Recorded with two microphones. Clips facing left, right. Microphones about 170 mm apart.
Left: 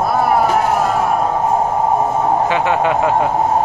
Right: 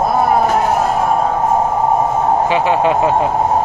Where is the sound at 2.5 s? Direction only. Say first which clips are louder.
Right 2 dB; 25° right (ahead or behind).